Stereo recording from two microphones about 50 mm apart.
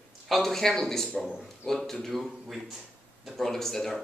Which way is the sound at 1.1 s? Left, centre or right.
Centre.